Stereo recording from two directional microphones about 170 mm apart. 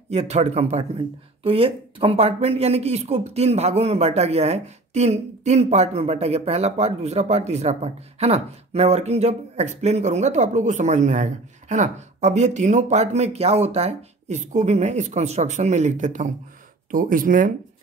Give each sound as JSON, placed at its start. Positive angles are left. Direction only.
{"t": 0.1, "sound": "speech", "side_deg": -40}